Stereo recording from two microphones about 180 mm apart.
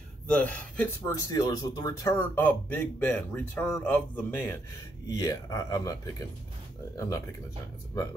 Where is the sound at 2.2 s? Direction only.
10° left (ahead or behind).